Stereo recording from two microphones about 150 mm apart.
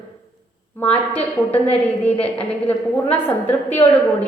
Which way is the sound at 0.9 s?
10° left (ahead or behind).